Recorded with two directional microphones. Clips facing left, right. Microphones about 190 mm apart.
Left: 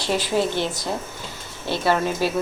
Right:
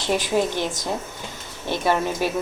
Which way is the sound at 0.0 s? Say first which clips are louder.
Even; 15° right (ahead or behind).